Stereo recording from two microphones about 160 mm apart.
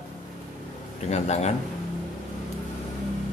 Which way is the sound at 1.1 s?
45° left (ahead or behind).